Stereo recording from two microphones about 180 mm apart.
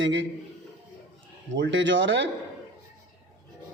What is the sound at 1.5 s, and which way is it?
Speech, 90° right.